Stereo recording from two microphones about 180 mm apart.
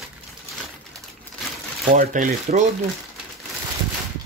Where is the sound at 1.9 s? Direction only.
50° right (ahead or behind).